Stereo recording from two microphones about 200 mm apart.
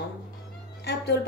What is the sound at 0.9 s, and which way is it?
Speech, 55° left (ahead or behind).